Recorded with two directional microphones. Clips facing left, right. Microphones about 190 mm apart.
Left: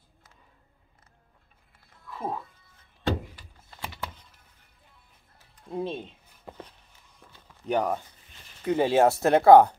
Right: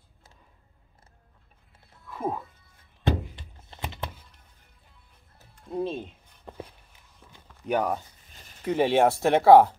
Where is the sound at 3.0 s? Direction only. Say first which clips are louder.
Right 1 dB; 25° right (ahead or behind).